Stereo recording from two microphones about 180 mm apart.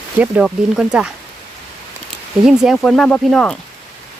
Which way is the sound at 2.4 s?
5° right (ahead or behind).